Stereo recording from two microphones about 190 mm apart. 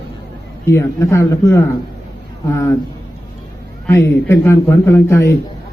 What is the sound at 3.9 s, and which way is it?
A man's voice, 15° left (ahead or behind).